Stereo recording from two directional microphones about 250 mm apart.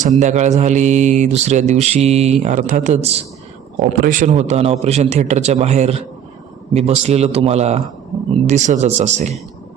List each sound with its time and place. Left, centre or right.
0.2 s speech: right